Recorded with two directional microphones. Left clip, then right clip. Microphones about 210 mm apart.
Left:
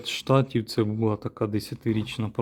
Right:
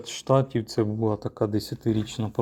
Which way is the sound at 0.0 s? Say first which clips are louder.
Right 1 dB; 35° left (ahead or behind).